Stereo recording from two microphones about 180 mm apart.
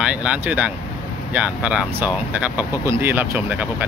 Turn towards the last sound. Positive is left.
turn(degrees=-10)  # may be behind; listen again after turning